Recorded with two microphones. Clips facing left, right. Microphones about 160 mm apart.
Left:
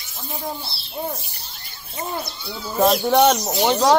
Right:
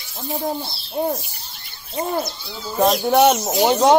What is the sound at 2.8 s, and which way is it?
Speech, centre (ahead or behind).